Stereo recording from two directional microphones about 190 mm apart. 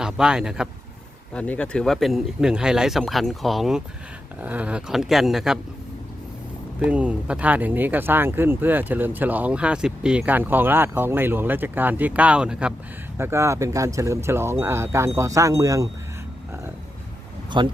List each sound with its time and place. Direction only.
0.0 s speech: 5° right (ahead or behind)
6.7 s speech: 5° right (ahead or behind)
17.5 s speech: 25° right (ahead or behind)